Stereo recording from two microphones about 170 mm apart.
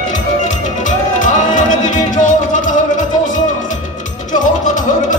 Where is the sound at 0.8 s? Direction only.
50° left (ahead or behind).